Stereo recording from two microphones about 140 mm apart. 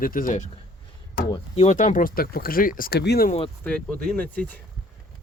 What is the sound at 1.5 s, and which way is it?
Speech, 55° left (ahead or behind).